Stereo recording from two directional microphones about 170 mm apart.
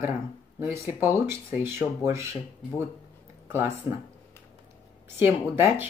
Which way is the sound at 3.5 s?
15° right (ahead or behind).